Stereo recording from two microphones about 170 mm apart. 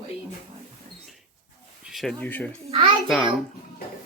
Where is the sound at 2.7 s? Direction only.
35° right (ahead or behind).